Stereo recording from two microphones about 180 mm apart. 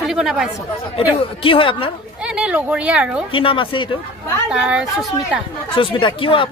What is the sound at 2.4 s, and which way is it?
Speech, 10° right (ahead or behind).